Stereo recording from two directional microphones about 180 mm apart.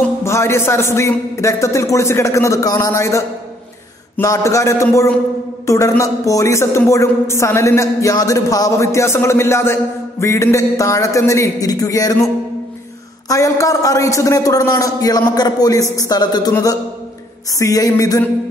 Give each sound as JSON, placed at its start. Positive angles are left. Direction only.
{"t": 0.2, "sound": "a woman's voice", "side_deg": 15}
{"t": 13.3, "sound": "a man's voice", "side_deg": 20}